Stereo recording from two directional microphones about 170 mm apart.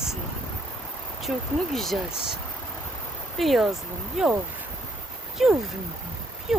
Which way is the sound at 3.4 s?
Centre (ahead or behind).